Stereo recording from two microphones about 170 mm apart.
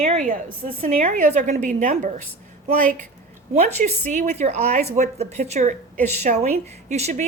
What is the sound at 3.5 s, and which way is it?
A woman's voice, 40° right (ahead or behind).